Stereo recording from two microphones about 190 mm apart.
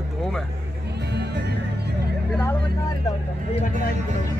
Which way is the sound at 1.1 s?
60° right (ahead or behind).